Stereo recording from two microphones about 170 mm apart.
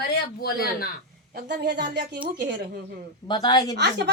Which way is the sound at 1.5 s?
80° right.